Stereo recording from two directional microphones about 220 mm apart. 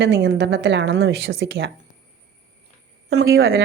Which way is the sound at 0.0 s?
50° right (ahead or behind).